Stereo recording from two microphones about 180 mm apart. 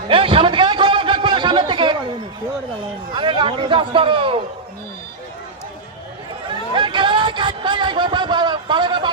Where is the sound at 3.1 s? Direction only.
30° right (ahead or behind).